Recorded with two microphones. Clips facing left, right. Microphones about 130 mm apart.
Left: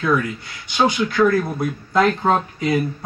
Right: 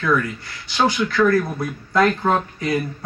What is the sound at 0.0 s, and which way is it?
Speech, 20° left (ahead or behind).